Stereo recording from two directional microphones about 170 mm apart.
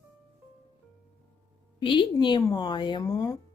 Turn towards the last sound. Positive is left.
turn(degrees=20)  # may be behind; listen again after turning